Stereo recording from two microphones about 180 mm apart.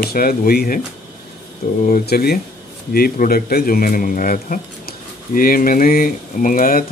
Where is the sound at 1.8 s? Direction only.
55° left (ahead or behind).